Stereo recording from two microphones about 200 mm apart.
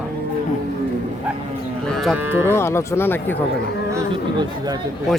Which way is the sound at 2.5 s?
15° left (ahead or behind).